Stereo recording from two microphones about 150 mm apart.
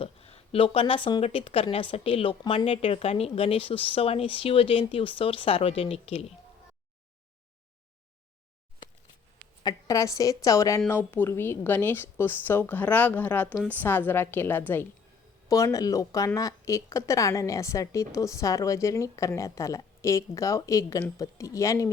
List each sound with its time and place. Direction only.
0.0 s speech: 40° left (ahead or behind)
9.6 s a woman's voice: 20° left (ahead or behind)